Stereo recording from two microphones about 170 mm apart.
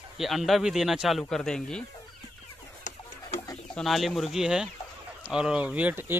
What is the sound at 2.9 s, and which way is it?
Chicken, 50° left (ahead or behind).